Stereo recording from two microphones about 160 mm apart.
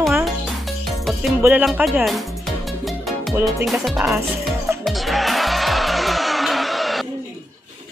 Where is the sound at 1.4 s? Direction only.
10° right (ahead or behind).